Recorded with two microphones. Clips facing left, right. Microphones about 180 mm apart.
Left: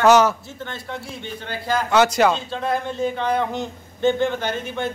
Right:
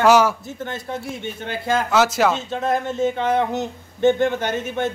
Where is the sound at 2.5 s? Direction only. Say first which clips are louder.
Right 2 dB; 20° right (ahead or behind).